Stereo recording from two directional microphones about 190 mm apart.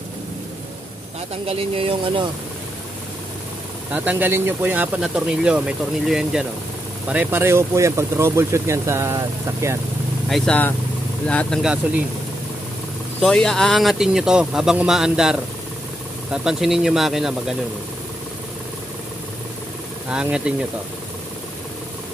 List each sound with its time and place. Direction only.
1.4 s speech: 30° right (ahead or behind)
3.9 s speech: 5° right (ahead or behind)
10.3 s speech: 5° left (ahead or behind)
13.2 s speech: 5° left (ahead or behind)
20.1 s speech: 5° right (ahead or behind)